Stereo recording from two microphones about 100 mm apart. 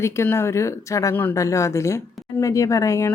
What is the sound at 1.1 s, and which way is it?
Speech, 20° left (ahead or behind).